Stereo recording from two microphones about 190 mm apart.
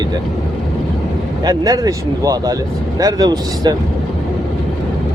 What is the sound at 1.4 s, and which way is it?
Speech, 20° right (ahead or behind).